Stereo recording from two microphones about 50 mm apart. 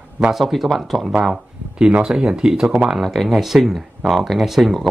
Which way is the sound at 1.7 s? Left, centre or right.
Centre.